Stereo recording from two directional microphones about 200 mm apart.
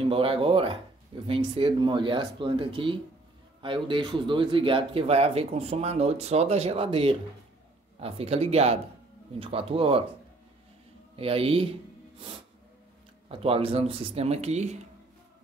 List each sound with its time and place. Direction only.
0.1 s speech: 25° right (ahead or behind)
11.1 s speech: 30° right (ahead or behind)
13.3 s speech: 30° right (ahead or behind)